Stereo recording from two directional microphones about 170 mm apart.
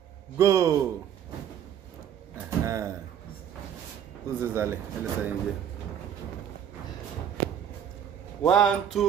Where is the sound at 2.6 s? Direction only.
20° right (ahead or behind).